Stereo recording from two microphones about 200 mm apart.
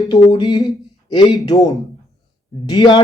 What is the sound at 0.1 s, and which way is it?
Speech, 20° left (ahead or behind).